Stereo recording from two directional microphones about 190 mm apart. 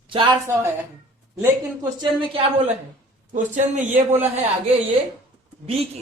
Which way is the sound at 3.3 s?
40° right (ahead or behind).